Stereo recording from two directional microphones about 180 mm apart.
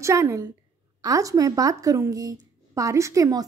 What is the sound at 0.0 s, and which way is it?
A woman's voice, 15° right (ahead or behind).